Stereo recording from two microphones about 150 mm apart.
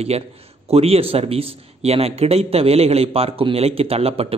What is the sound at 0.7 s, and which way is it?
A man's voice, 40° right (ahead or behind).